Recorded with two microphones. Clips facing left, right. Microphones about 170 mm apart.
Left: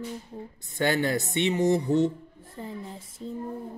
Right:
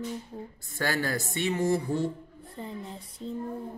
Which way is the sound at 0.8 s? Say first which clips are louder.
Left 4 dB; 20° left (ahead or behind).